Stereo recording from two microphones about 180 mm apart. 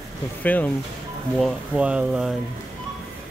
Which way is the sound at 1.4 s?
5° right (ahead or behind).